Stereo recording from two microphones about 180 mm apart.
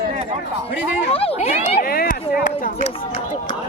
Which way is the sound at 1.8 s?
55° left (ahead or behind).